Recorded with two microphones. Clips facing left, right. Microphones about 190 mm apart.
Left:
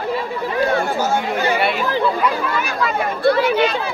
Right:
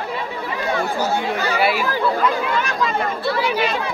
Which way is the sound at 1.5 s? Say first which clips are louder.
Even; centre (ahead or behind).